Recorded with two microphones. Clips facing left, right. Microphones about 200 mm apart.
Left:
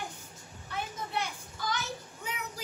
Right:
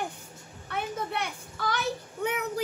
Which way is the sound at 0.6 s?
60° right (ahead or behind).